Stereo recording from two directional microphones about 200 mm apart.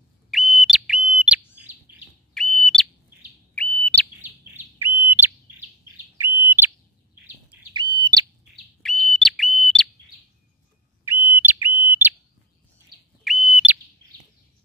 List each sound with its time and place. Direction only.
0.3 s whistle: centre (ahead or behind)
1.9 s bird: 10° right (ahead or behind)
2.3 s bird: centre (ahead or behind)
4.7 s bird: 10° right (ahead or behind)
8.0 s bird: 20° right (ahead or behind)
8.8 s bird: centre (ahead or behind)
11.1 s bird: 10° right (ahead or behind)
13.2 s bird: centre (ahead or behind)